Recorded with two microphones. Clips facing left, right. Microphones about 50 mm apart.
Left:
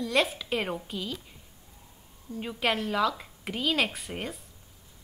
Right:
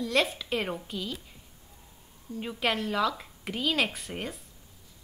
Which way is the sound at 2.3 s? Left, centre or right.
Centre.